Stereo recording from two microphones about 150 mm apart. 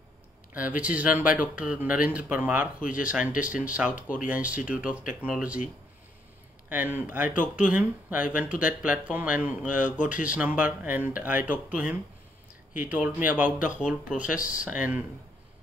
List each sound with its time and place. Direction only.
0.5 s speech: 10° right (ahead or behind)
3.9 s speech: 65° left (ahead or behind)
4.3 s speech: 10° right (ahead or behind)
6.7 s speech: 10° right (ahead or behind)